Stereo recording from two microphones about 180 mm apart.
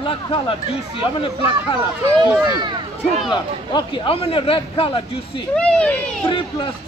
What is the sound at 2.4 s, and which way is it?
Speech, 25° right (ahead or behind).